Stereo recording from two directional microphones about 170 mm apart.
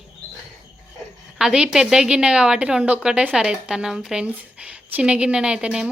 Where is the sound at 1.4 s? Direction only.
5° right (ahead or behind).